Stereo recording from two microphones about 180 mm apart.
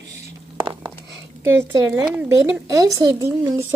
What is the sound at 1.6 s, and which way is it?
A woman's voice, 15° right (ahead or behind).